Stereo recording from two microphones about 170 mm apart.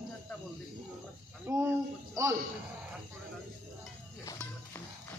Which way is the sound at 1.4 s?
15° right (ahead or behind).